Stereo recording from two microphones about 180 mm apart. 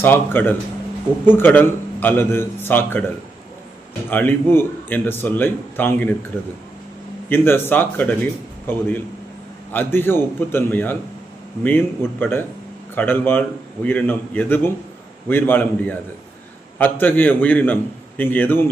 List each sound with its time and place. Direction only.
0.0 s a man's voice: 10° left (ahead or behind)
4.1 s a man's voice: 10° left (ahead or behind)
7.3 s a man's voice: 10° left (ahead or behind)